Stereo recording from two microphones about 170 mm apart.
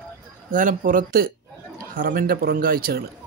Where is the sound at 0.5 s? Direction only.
55° right (ahead or behind).